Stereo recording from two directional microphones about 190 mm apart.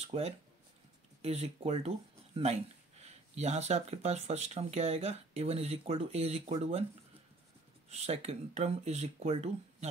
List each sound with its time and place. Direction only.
0.0 s speech: 30° right (ahead or behind)
7.9 s speech: 35° right (ahead or behind)